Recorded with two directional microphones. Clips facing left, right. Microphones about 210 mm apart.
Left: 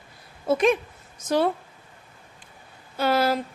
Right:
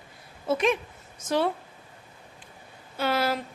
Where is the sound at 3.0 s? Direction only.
40° left (ahead or behind).